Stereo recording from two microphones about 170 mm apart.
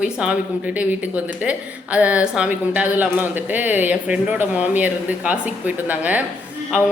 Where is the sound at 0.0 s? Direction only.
5° right (ahead or behind).